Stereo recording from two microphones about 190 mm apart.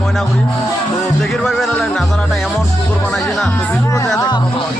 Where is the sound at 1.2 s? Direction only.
5° left (ahead or behind); by 4.4 s 20° left (ahead or behind).